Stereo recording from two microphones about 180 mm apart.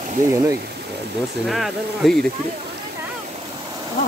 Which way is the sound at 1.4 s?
Centre (ahead or behind).